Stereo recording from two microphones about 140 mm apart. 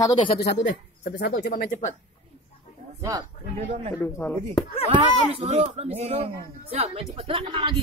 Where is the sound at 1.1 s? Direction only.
90° left.